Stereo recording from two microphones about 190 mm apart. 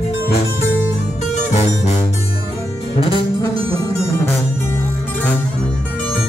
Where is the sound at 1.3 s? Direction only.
35° left (ahead or behind).